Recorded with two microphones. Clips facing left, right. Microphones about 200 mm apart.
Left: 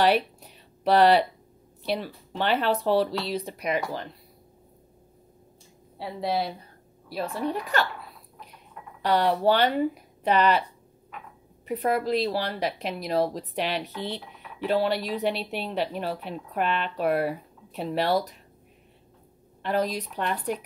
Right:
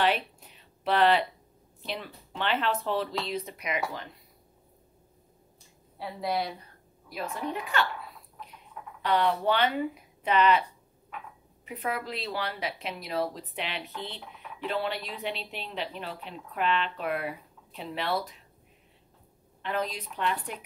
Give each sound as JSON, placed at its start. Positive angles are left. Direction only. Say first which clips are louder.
{"t": 0.0, "sound": "a sound", "louder": "left 5 dB", "side_deg": 40}
{"t": 1.8, "sound": "a woman's voice", "louder": "left 8 dB", "side_deg": 35}
{"t": 5.9, "sound": "a woman's voice", "louder": "left 3 dB", "side_deg": 30}
{"t": 9.0, "sound": "a woman's voice", "louder": "left 4 dB", "side_deg": 35}
{"t": 11.6, "sound": "a woman's voice", "louder": "left 8 dB", "side_deg": 40}
{"t": 19.6, "sound": "a woman's voice", "louder": "left 6 dB", "side_deg": 40}